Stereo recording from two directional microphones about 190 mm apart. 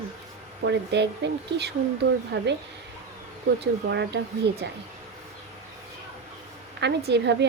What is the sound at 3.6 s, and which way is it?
Speech, 65° right (ahead or behind).